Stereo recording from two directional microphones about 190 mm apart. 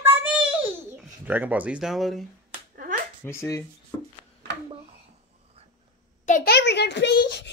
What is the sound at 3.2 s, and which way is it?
Speech, 15° left (ahead or behind).